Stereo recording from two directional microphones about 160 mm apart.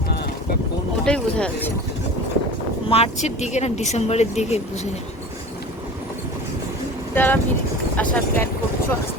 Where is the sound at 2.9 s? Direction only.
40° left (ahead or behind).